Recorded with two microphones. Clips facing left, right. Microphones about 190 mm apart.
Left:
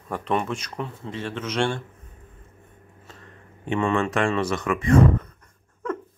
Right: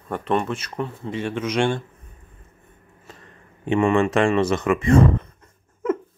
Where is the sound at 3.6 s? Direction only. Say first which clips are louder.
Right 5 dB; 20° right (ahead or behind).